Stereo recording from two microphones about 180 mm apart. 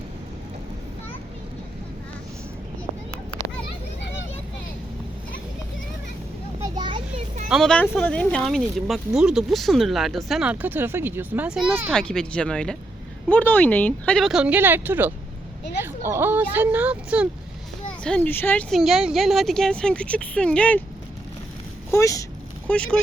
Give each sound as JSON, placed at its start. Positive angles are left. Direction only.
{"t": 6.6, "sound": "a sound", "side_deg": -25}
{"t": 7.5, "sound": "speech", "side_deg": 5}
{"t": 11.9, "sound": "speech", "side_deg": 5}
{"t": 18.0, "sound": "speech", "side_deg": 5}
{"t": 21.9, "sound": "vehicle", "side_deg": 15}
{"t": 22.7, "sound": "speech", "side_deg": 5}